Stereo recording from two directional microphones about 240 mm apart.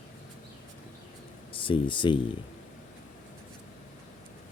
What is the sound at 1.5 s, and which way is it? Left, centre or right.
Speech, left.